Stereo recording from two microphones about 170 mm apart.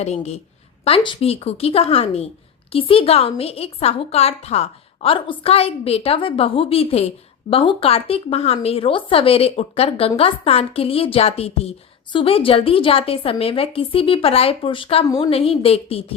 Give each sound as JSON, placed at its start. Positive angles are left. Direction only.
{"t": 0.0, "sound": "a woman's voice", "side_deg": 40}
{"t": 15.0, "sound": "a woman's voice", "side_deg": 20}
{"t": 15.3, "sound": "a woman's voice", "side_deg": 35}